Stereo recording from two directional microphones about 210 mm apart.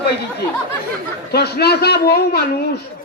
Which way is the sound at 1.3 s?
50° left (ahead or behind).